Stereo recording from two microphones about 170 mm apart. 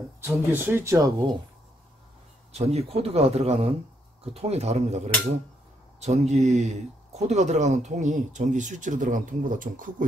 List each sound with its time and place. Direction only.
0.2 s speech: 15° right (ahead or behind)
2.5 s speech: 40° right (ahead or behind)